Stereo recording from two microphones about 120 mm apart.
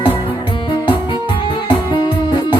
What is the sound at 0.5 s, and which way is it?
Music, 40° left (ahead or behind).